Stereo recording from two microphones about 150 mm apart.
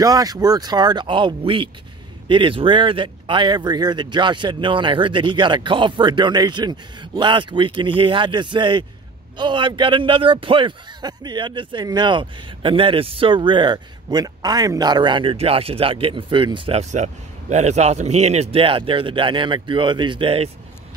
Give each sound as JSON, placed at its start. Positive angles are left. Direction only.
{"t": 0.0, "sound": "speech", "side_deg": -25}
{"t": 16.9, "sound": "speech", "side_deg": -50}